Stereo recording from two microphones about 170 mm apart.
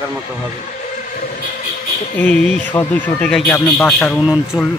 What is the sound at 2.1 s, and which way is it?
A man's voice, 5° left (ahead or behind).